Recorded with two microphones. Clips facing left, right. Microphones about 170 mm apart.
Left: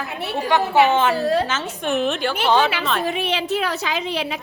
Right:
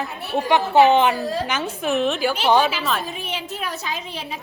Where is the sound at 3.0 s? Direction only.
70° left (ahead or behind).